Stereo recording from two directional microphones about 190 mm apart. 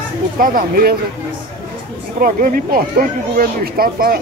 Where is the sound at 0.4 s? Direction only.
45° right (ahead or behind).